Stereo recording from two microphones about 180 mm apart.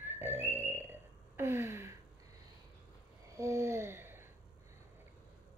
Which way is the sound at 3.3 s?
15° right (ahead or behind).